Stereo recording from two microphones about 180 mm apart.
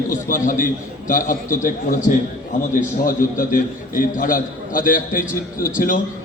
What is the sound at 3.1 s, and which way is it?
A man's voice, 50° left (ahead or behind).